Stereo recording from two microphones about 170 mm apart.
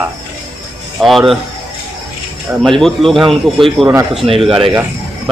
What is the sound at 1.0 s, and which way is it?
Speech, centre (ahead or behind).